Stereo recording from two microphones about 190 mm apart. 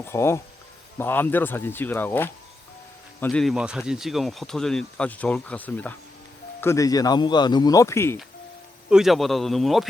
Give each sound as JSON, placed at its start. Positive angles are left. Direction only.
{"t": 0.0, "sound": "speech", "side_deg": 15}
{"t": 8.9, "sound": "speech", "side_deg": 0}